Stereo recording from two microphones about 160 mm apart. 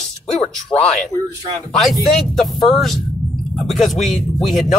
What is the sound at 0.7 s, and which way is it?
Speech, 20° left (ahead or behind).